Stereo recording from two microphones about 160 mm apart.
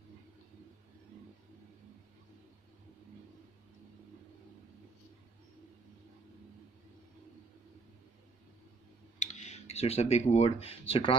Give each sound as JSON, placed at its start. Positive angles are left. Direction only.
{"t": 9.2, "sound": "speech", "side_deg": 45}